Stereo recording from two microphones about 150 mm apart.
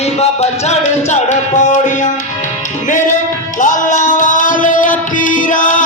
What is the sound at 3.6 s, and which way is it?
Music, 60° left (ahead or behind).